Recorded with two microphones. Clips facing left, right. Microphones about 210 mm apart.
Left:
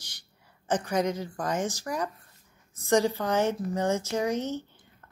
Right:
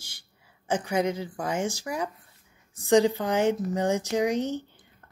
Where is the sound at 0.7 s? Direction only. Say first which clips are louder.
Right 1 dB; 10° right (ahead or behind).